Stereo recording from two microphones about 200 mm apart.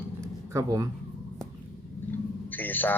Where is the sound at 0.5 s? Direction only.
15° right (ahead or behind).